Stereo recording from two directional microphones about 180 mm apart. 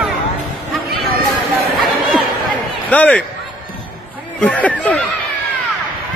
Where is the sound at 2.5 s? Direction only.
10° left (ahead or behind).